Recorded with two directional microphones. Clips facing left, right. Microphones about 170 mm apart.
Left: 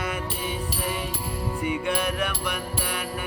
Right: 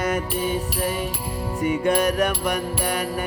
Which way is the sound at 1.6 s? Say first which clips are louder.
Right 7 dB; 45° right (ahead or behind).